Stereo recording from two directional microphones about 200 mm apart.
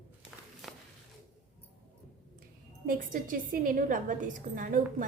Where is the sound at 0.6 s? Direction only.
Centre (ahead or behind).